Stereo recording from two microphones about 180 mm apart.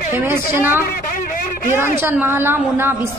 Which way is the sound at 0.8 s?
50° left (ahead or behind).